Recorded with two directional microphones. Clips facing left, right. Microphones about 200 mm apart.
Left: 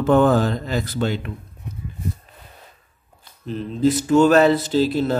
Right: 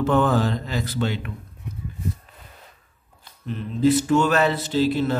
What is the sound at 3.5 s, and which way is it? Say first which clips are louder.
Mantra: even; 40° left (ahead or behind).